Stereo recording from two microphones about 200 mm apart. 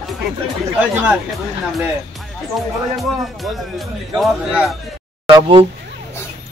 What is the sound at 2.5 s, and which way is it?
A man's voice, centre (ahead or behind).